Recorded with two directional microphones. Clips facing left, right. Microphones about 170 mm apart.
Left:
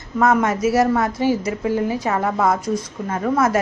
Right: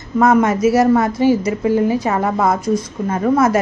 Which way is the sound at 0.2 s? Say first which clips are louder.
Right 4 dB; 15° right (ahead or behind).